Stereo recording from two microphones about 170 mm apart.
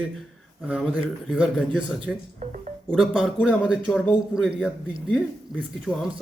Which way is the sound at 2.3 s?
45° right (ahead or behind).